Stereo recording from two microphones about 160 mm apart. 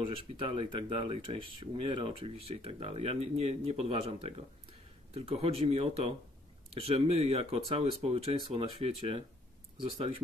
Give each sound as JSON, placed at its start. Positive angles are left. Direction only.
{"t": 0.0, "sound": "speech", "side_deg": -30}